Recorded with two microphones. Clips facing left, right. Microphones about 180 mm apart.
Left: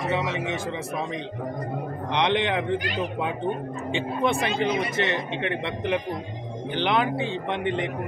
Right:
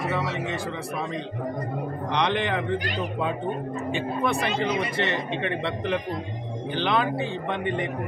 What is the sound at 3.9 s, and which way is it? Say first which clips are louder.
A man's voice: left 2 dB; 20° left (ahead or behind).